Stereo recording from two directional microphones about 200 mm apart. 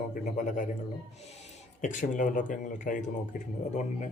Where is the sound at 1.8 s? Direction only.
40° left (ahead or behind).